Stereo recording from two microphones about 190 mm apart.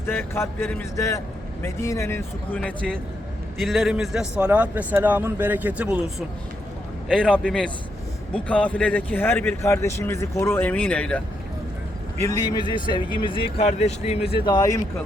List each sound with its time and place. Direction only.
0.0 s a man's voice: 10° left (ahead or behind); by 6.2 s 5° right (ahead or behind)
7.1 s a man's voice: 5° left (ahead or behind)
12.3 s speech: 20° left (ahead or behind)